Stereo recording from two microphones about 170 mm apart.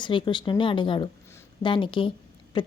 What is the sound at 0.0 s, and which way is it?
A woman's voice, 30° left (ahead or behind).